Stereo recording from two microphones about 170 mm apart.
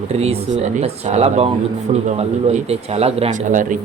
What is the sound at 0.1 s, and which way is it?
Speech, 40° right (ahead or behind).